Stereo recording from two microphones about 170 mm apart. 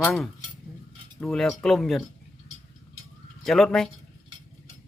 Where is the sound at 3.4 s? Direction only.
Centre (ahead or behind).